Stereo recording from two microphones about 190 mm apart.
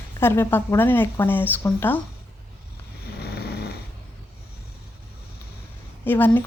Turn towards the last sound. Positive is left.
turn(degrees=10)  # may be behind; listen again after turning